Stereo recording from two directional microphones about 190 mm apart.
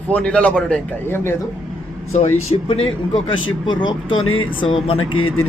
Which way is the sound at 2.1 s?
35° left (ahead or behind).